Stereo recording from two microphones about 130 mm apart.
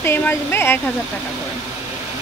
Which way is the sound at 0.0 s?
20° left (ahead or behind).